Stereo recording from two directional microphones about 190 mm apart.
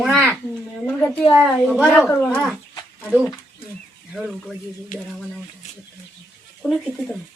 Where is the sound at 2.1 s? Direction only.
5° left (ahead or behind).